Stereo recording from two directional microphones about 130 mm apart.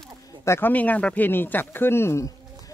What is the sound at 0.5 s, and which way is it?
Speech, 15° left (ahead or behind).